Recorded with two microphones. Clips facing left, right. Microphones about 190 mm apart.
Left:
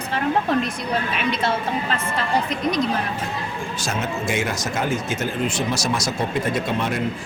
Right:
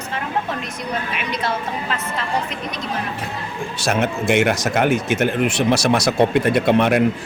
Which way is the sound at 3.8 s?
65° right (ahead or behind).